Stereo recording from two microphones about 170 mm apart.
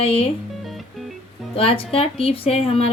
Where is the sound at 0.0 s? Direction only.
35° left (ahead or behind).